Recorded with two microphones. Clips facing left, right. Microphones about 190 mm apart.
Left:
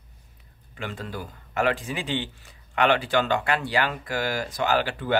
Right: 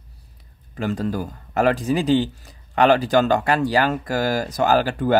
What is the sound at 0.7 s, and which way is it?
Speech, 40° right (ahead or behind).